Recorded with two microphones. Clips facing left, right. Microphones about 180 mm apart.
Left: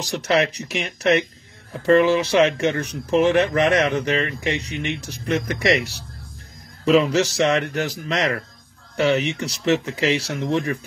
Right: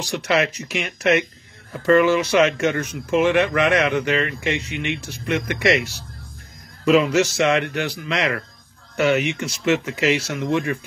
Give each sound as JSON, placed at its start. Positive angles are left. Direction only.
{"t": 0.0, "sound": "speech", "side_deg": 40}